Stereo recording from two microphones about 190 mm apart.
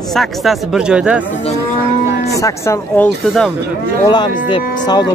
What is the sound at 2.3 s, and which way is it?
Speech, 15° left (ahead or behind).